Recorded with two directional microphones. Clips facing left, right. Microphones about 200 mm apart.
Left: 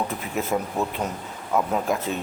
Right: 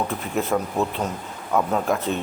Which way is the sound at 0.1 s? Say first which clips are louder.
Right 2 dB; 5° left (ahead or behind).